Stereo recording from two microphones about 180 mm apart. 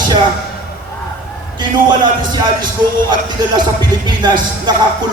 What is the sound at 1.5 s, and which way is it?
A man's voice, 25° right (ahead or behind).